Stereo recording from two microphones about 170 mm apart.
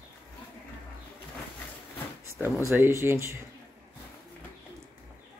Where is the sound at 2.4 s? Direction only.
15° right (ahead or behind).